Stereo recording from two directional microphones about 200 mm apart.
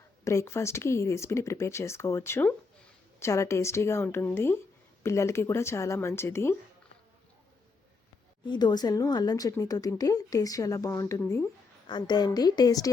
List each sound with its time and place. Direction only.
0.3 s speech: 15° left (ahead or behind)
8.4 s a woman's voice: 20° left (ahead or behind)